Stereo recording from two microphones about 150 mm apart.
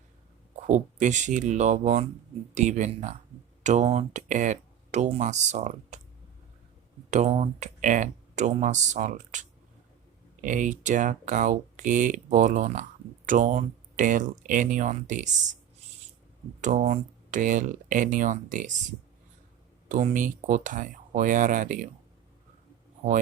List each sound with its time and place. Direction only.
0.7 s speech: 55° right (ahead or behind)
7.1 s speech: 50° right (ahead or behind)
16.6 s speech: 50° right (ahead or behind)
19.9 s speech: 60° right (ahead or behind)